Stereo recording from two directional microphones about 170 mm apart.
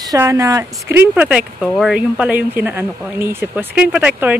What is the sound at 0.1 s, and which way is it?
Speech, 15° right (ahead or behind).